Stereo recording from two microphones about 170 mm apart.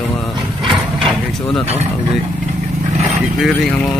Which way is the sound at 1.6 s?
40° right (ahead or behind).